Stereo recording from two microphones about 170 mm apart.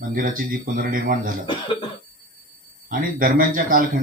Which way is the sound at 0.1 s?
55° right (ahead or behind).